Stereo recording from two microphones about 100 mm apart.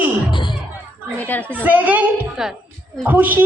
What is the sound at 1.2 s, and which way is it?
Speech, 15° left (ahead or behind).